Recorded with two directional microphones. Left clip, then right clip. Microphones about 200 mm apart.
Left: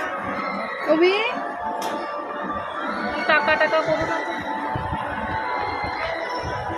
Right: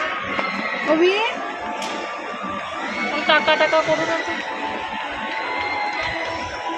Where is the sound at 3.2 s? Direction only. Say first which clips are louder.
Right 2 dB; 25° right (ahead or behind).